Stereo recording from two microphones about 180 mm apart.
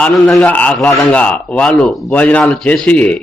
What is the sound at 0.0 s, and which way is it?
A man's voice, 5° left (ahead or behind).